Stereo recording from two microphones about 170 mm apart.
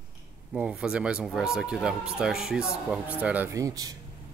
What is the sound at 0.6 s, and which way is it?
Speech, 5° right (ahead or behind).